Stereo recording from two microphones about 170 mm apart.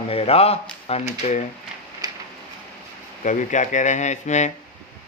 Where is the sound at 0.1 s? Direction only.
35° left (ahead or behind).